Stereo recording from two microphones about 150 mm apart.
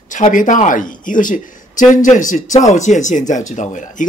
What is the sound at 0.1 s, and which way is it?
Speech, 60° left (ahead or behind).